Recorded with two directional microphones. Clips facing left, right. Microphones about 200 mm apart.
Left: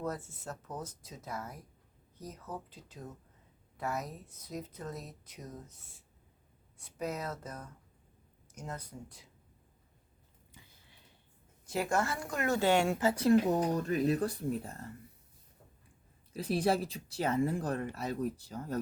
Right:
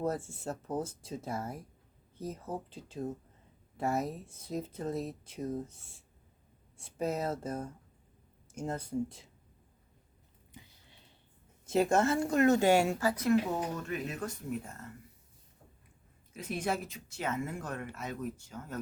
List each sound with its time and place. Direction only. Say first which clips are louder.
0.0 s speech: right 4 dB; 30° right (ahead or behind)
11.6 s speech: right 5 dB; 25° right (ahead or behind)
13.0 s speech: left 2 dB; 25° left (ahead or behind)
16.3 s speech: left 4 dB; 35° left (ahead or behind)